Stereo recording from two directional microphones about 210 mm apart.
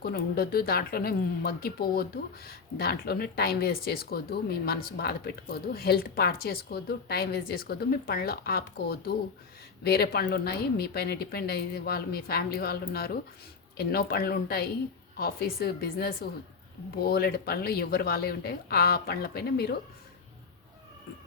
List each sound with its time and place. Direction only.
0.0 s speech: 45° left (ahead or behind)